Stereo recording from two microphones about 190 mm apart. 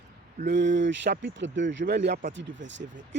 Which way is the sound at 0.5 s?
75° right (ahead or behind).